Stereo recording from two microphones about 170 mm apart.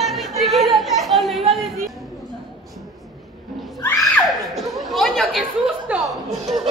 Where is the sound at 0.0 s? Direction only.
Centre (ahead or behind).